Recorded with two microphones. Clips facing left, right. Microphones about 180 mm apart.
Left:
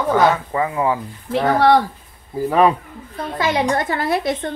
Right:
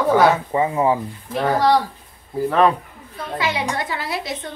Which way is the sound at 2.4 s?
10° left (ahead or behind).